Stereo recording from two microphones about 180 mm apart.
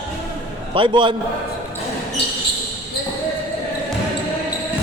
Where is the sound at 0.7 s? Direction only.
30° right (ahead or behind).